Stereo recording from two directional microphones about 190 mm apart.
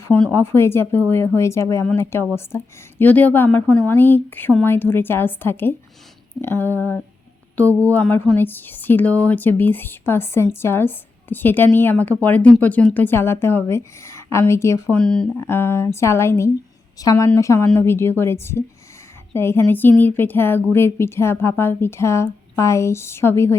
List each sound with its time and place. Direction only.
0.1 s speech: 10° left (ahead or behind)